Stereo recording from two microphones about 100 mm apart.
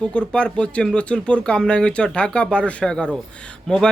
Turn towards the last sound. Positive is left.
turn(degrees=5)  # may be behind; listen again after turning